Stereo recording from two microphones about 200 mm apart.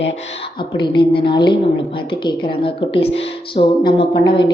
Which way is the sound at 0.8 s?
25° left (ahead or behind).